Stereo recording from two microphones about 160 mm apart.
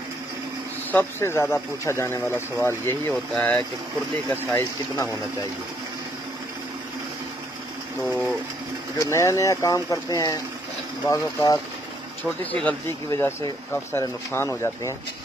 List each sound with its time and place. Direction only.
0.9 s speech: 15° left (ahead or behind)
8.1 s speech: 5° right (ahead or behind)
9.0 s speech: 20° left (ahead or behind)
12.3 s speech: 5° left (ahead or behind)